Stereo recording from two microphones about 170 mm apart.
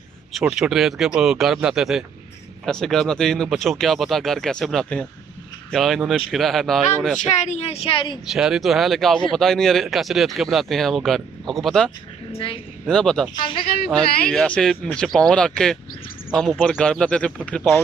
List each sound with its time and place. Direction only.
0.3 s speech: centre (ahead or behind)
7.3 s a woman's voice: 40° left (ahead or behind)
8.3 s speech: centre (ahead or behind)
12.3 s a woman's voice: 35° left (ahead or behind)
12.8 s speech: 5° left (ahead or behind)
13.4 s a woman's voice: 30° left (ahead or behind)
13.8 s speech: 5° left (ahead or behind)